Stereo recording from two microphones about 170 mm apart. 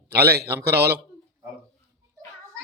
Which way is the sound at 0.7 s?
70° right (ahead or behind).